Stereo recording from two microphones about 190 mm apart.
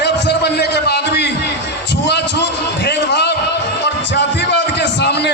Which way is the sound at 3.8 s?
65° left (ahead or behind).